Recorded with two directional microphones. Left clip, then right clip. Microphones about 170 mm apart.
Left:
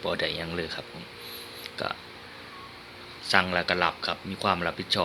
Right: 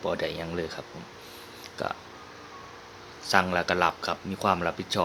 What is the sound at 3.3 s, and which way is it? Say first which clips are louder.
Speech: even; 20° right (ahead or behind).